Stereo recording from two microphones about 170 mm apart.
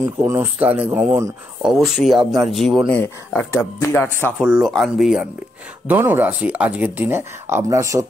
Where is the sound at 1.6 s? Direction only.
Centre (ahead or behind).